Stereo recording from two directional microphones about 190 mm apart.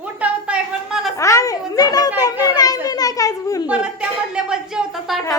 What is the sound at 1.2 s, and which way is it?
A woman's voice, 15° left (ahead or behind).